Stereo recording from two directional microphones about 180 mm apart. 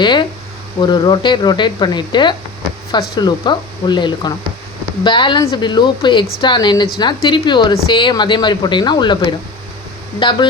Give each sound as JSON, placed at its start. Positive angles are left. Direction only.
{"t": 0.0, "sound": "speech", "side_deg": 25}